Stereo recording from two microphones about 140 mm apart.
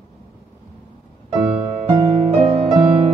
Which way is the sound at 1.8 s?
35° right (ahead or behind).